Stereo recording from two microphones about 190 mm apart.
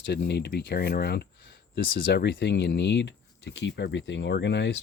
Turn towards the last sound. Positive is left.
turn(degrees=65)  # may be behind; listen again after turning